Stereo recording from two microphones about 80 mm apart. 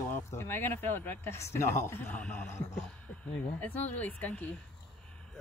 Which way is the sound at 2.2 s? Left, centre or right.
Left.